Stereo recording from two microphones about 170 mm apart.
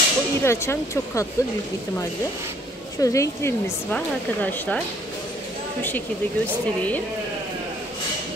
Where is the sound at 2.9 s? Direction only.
20° left (ahead or behind).